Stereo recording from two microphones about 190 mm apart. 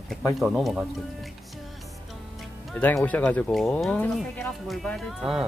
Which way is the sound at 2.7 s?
10° left (ahead or behind).